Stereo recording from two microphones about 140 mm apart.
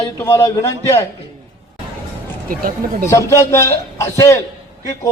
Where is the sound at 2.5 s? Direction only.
85° right.